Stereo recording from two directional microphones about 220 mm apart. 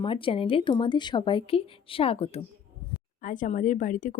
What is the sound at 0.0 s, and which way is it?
A woman's voice, 25° left (ahead or behind).